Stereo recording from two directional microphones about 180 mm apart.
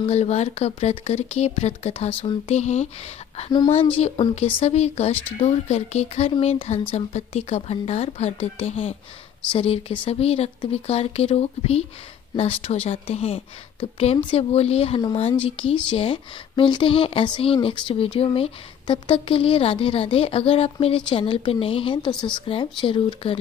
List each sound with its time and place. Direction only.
0.0 s a woman's voice: 35° left (ahead or behind)